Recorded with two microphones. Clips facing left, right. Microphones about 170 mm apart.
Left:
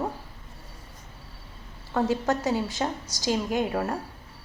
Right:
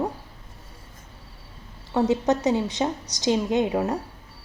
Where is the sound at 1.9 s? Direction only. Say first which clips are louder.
Right 4 dB; 20° right (ahead or behind).